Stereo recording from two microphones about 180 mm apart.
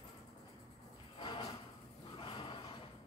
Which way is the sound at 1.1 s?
30° left (ahead or behind).